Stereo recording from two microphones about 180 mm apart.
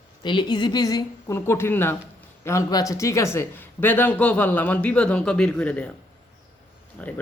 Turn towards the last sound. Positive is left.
turn(degrees=10)  # may be behind; listen again after turning